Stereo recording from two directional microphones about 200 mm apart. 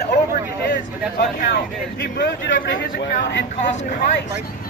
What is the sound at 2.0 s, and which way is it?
Speech, 60° left (ahead or behind).